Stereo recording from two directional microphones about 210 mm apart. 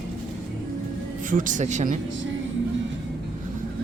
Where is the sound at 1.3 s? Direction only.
40° right (ahead or behind).